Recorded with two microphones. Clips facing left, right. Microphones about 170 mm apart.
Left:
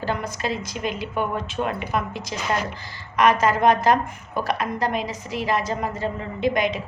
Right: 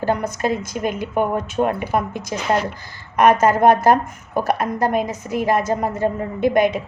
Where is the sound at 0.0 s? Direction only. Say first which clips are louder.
Right 6 dB; 45° right (ahead or behind).